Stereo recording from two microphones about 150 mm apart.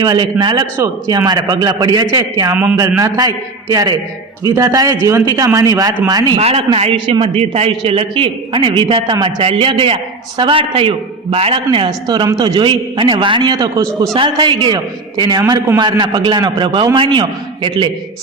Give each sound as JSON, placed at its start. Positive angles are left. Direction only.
{"t": 0.0, "sound": "a man's voice", "side_deg": -30}
{"t": 6.4, "sound": "a man's voice", "side_deg": -45}